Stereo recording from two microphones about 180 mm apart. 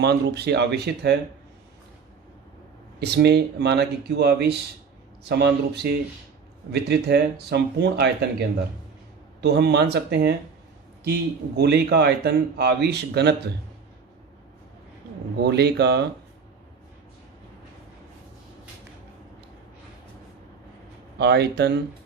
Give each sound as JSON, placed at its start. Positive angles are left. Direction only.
{"t": 0.0, "sound": "speech", "side_deg": -65}
{"t": 3.0, "sound": "a man's voice", "side_deg": -65}
{"t": 15.4, "sound": "a man's voice", "side_deg": -65}
{"t": 21.2, "sound": "a man's voice", "side_deg": -70}